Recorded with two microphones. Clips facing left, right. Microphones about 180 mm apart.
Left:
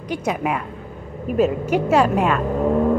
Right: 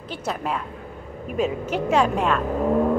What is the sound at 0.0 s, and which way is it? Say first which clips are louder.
A woman's voice: left 6 dB; 15° left (ahead or behind).